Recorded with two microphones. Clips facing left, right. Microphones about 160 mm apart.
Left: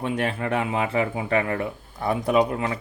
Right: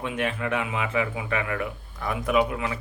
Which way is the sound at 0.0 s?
35° left (ahead or behind).